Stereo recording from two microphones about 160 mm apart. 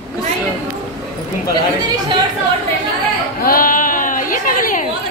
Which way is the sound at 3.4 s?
60° left (ahead or behind).